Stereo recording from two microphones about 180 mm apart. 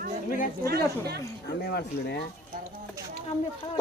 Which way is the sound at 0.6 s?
60° right (ahead or behind).